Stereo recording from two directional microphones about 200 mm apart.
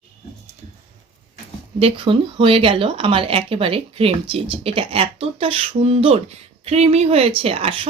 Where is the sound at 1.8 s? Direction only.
25° right (ahead or behind).